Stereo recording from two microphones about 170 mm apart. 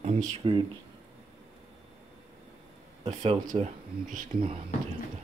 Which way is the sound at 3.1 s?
40° right (ahead or behind).